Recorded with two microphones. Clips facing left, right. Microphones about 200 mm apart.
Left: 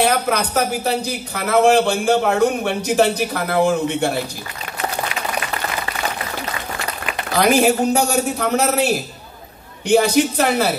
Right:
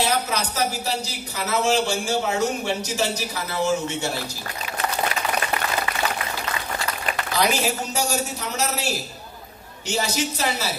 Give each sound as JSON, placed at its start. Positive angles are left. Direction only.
{"t": 0.0, "sound": "a man's voice", "side_deg": 60}
{"t": 7.3, "sound": "a man's voice", "side_deg": 55}